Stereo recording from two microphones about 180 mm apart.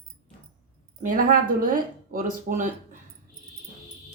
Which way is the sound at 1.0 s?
50° right (ahead or behind).